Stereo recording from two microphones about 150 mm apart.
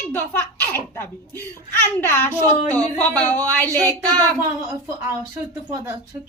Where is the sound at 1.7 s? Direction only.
15° left (ahead or behind).